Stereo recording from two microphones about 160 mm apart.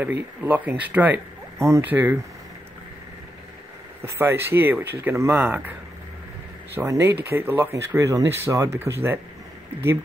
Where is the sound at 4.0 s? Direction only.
15° right (ahead or behind).